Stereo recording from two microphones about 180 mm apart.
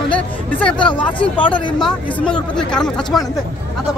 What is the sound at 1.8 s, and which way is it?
Speech, 5° left (ahead or behind).